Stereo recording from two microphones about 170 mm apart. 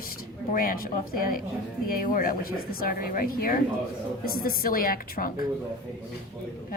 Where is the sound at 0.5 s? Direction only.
55° left (ahead or behind).